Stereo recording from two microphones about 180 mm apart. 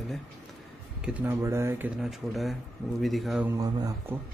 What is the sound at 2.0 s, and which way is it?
A man's voice, centre (ahead or behind).